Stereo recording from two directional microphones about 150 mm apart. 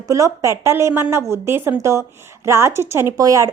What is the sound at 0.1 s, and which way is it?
A woman's voice, 20° right (ahead or behind).